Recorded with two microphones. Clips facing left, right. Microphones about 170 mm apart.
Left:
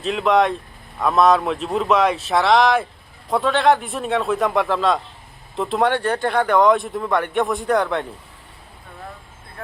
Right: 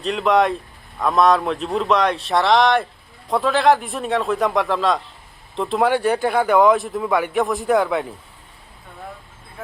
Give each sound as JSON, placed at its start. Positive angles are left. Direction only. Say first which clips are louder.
{"t": 0.0, "sound": "speech", "louder": "even", "side_deg": 0}